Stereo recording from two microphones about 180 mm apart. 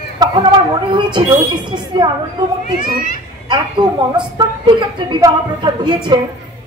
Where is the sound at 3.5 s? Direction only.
25° right (ahead or behind).